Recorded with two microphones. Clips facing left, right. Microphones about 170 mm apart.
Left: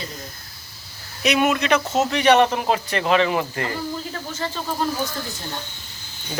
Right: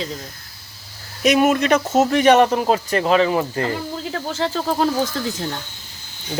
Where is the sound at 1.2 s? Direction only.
45° right (ahead or behind).